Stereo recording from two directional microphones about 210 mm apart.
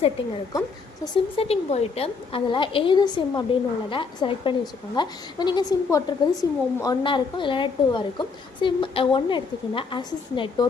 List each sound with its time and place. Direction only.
1.0 s a woman's voice: 25° left (ahead or behind)